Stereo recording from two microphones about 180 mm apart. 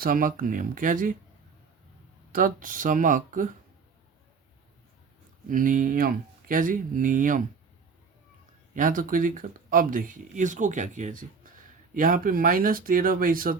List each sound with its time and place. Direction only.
0.0 s speech: 50° right (ahead or behind)
2.3 s speech: 50° right (ahead or behind)
5.5 s speech: 45° right (ahead or behind)
8.7 s speech: 45° right (ahead or behind)